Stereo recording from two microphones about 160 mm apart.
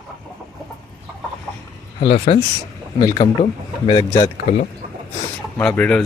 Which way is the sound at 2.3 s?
40° left (ahead or behind).